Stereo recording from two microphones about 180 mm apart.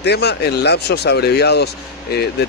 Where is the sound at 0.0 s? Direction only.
70° left (ahead or behind).